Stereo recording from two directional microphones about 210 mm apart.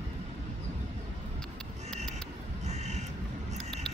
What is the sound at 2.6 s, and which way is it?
Crow, 30° right (ahead or behind).